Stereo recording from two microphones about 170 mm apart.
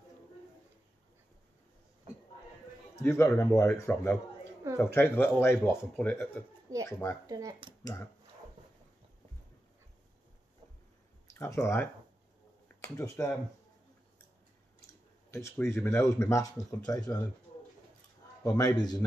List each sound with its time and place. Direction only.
3.0 s speech: 15° left (ahead or behind)
7.2 s speech: 20° right (ahead or behind)
7.8 s speech: 15° left (ahead or behind)
11.3 s a man's voice: 15° left (ahead or behind)
15.3 s speech: 15° left (ahead or behind)
18.4 s a man's voice: 20° left (ahead or behind)